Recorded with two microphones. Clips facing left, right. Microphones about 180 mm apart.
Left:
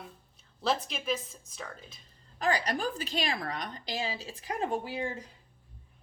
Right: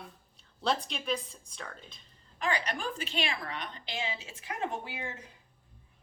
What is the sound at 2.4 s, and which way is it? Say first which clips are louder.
A woman's voice: left 3 dB; 35° left (ahead or behind).